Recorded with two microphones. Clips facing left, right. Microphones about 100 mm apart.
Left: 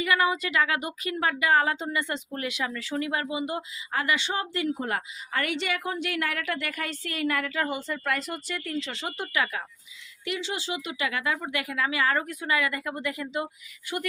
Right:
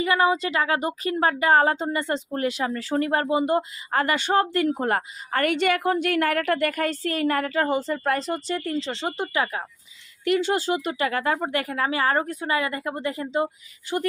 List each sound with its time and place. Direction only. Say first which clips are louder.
0.0 s speech: right 4 dB; 30° right (ahead or behind)
10.2 s speech: right 10 dB; 50° right (ahead or behind); by 14.0 s 30° right (ahead or behind)